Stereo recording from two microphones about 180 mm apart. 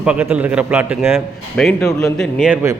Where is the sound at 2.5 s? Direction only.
15° right (ahead or behind).